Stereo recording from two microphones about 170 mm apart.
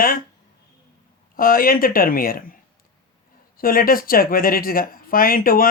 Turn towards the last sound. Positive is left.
turn(degrees=60)  # may be behind; listen again after turning